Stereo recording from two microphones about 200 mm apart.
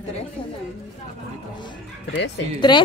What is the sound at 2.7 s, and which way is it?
Speech, 20° left (ahead or behind).